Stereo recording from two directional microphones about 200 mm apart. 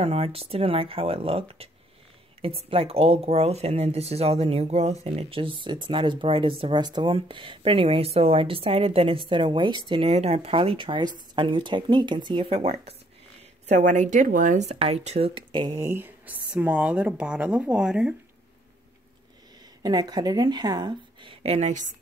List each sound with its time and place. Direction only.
0.0 s speech: 30° right (ahead or behind); by 18.1 s 5° right (ahead or behind)
19.8 s speech: 20° right (ahead or behind); by 21.9 s 35° right (ahead or behind)